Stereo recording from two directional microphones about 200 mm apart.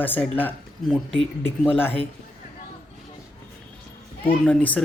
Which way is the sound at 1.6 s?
10° left (ahead or behind).